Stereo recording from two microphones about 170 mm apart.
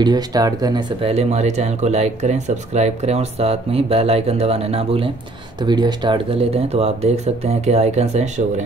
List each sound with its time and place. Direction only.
0.0 s speech: 25° right (ahead or behind)
1.0 s speech: 40° right (ahead or behind)